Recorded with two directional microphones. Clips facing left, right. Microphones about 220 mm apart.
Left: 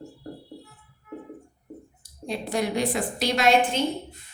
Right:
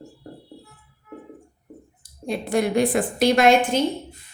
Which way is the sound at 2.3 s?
55° right (ahead or behind).